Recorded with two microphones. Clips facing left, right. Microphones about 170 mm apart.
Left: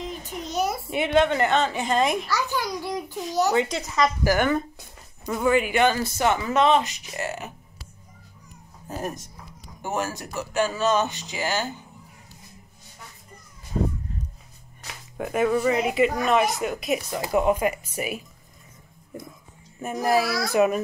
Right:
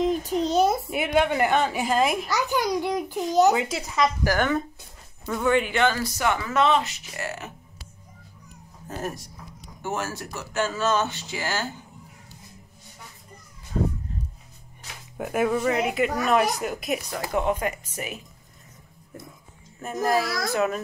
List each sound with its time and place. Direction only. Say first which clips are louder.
0.3 s a sound: right 3 dB; 30° right (ahead or behind)
0.8 s a woman's voice: left 2 dB; 5° right (ahead or behind)
2.2 s a child's voice: right 2 dB; 20° right (ahead or behind)
3.5 s speech: left 2 dB; 5° right (ahead or behind)
4.2 s speech: left 2 dB; 10° left (ahead or behind)
6.0 s speech: left 2 dB; 25° left (ahead or behind)
8.8 s speech: left 1 dB; 15° left (ahead or behind)
15.1 s speech: left 1 dB; 5° right (ahead or behind); by 18.2 s 10° left (ahead or behind)
19.8 s speech: left 2 dB; 15° left (ahead or behind)